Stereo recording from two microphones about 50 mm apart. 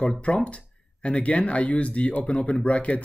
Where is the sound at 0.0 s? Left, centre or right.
Centre.